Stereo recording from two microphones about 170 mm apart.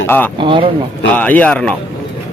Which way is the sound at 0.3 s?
30° right (ahead or behind).